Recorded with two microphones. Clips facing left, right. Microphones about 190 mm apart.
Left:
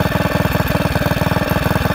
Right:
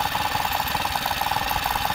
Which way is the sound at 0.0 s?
60° left (ahead or behind).